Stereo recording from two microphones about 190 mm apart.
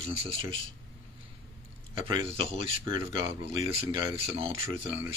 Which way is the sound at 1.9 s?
30° right (ahead or behind).